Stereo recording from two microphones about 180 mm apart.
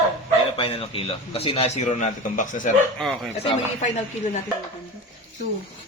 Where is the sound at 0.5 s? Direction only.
30° left (ahead or behind).